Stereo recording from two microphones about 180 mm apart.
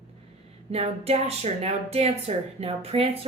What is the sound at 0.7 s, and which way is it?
Speech, 35° right (ahead or behind).